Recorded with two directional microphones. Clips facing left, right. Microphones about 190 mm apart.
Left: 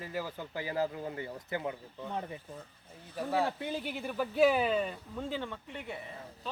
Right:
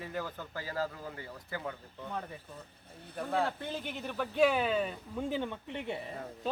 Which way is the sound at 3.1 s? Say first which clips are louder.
Left 1 dB; 5° left (ahead or behind).